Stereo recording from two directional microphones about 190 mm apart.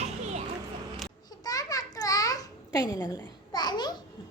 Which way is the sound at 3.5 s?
20° left (ahead or behind).